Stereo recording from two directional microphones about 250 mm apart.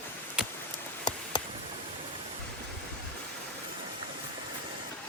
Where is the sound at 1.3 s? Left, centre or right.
Centre.